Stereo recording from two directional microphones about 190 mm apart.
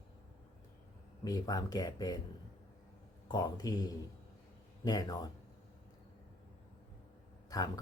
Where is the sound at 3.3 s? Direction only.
20° left (ahead or behind).